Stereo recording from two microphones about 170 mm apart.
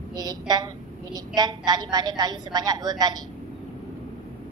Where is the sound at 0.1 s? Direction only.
25° right (ahead or behind).